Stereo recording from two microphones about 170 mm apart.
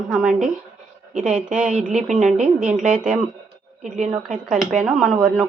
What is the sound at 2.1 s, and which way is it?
Speech, 45° right (ahead or behind).